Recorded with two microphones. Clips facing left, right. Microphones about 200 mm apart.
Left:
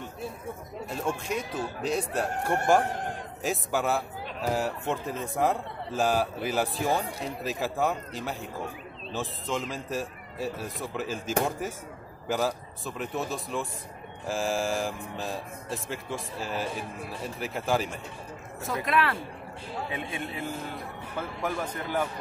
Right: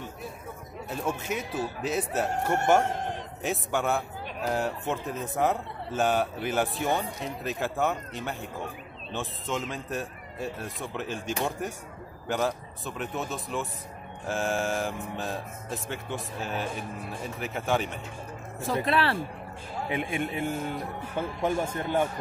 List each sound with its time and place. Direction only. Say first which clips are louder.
0.8 s a man's voice: even; 5° right (ahead or behind)
18.6 s a man's voice: right 1 dB; 30° right (ahead or behind)